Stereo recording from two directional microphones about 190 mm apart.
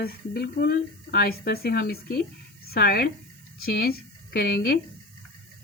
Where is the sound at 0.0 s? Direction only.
55° left (ahead or behind).